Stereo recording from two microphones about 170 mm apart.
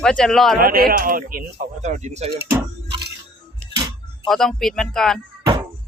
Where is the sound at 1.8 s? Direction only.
40° right (ahead or behind).